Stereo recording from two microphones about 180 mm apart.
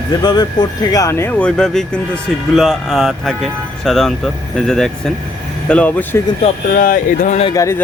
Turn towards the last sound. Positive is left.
turn(degrees=15)  # may be behind; listen again after turning